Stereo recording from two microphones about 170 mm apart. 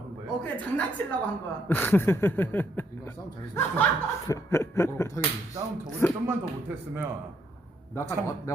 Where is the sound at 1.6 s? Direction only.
10° left (ahead or behind).